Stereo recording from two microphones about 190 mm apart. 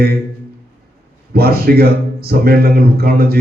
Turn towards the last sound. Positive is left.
turn(degrees=-55)  # may be behind; listen again after turning